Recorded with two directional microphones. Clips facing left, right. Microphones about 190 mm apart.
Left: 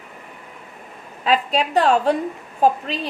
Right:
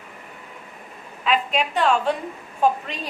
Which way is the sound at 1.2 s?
35° left (ahead or behind).